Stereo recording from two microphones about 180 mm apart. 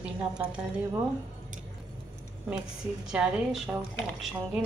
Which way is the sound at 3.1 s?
5° right (ahead or behind).